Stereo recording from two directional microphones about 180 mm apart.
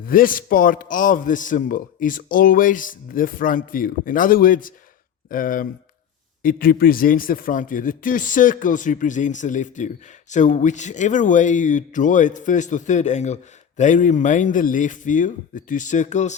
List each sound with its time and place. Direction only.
0.0 s a man's voice: 50° left (ahead or behind)